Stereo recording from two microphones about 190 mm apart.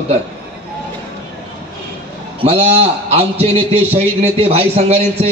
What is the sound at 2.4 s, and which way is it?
A man's voice, 30° right (ahead or behind).